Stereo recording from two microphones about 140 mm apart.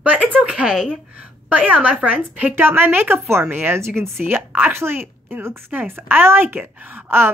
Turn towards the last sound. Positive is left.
turn(degrees=-15)  # may be behind; listen again after turning